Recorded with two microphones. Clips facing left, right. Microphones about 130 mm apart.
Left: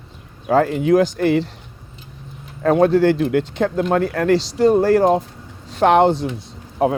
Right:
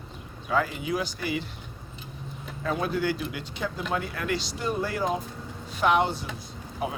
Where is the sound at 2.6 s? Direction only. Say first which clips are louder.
Left 14 dB; 80° left.